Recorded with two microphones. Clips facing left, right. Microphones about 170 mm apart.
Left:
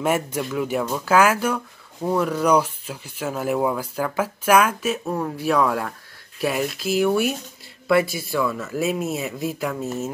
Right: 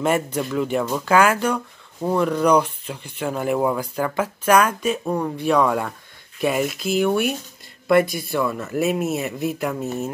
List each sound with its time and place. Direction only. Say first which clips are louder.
0.0 s speech: right 1 dB; 5° left (ahead or behind)